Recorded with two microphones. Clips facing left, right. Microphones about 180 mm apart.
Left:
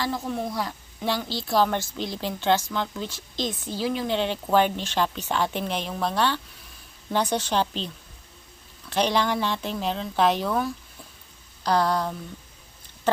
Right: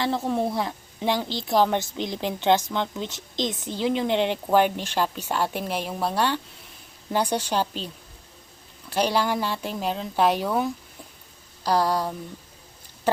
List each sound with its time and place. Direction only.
0.0 s a woman's voice: 30° right (ahead or behind); by 7.9 s 10° right (ahead or behind)
8.9 s a woman's voice: 10° right (ahead or behind)